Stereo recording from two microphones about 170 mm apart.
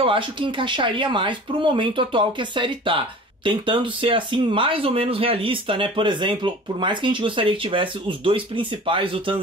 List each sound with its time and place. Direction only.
0.0 s speech: 30° right (ahead or behind)